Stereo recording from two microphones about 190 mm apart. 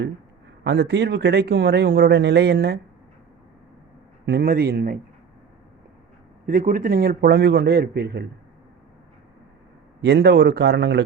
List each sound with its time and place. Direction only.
0.6 s a man's voice: 65° right (ahead or behind)
4.3 s a man's voice: 55° right (ahead or behind)
6.4 s a man's voice: 45° right (ahead or behind)
10.0 s a man's voice: 65° right (ahead or behind)